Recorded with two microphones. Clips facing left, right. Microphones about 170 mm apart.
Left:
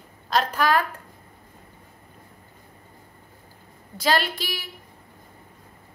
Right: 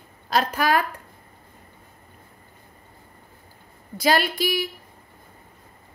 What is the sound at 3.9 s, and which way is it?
Speech, 10° right (ahead or behind).